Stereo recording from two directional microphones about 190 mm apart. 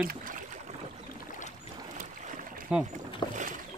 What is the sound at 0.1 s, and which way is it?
Boat, 45° right (ahead or behind).